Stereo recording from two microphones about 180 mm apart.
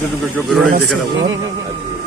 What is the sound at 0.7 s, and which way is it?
Speech, 60° right (ahead or behind).